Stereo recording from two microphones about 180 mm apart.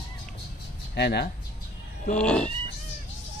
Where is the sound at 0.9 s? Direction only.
65° left (ahead or behind).